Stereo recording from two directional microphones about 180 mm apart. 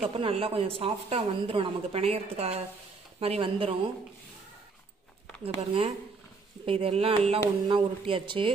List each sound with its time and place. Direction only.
0.0 s speech: 30° right (ahead or behind)
5.4 s speech: 30° right (ahead or behind)